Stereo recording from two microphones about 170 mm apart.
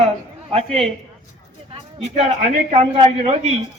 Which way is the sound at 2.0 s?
40° right (ahead or behind).